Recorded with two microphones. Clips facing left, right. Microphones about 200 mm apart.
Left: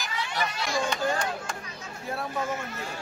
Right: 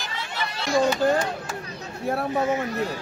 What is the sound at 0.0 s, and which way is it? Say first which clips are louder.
Children playing: left 1 dB; 30° right (ahead or behind).